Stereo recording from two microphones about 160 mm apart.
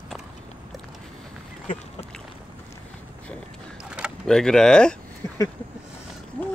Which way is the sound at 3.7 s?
5° right (ahead or behind).